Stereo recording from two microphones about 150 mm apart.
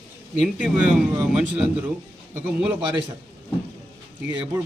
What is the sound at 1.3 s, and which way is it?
Speech, 5° right (ahead or behind).